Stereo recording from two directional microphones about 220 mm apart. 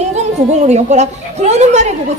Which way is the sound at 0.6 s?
30° right (ahead or behind).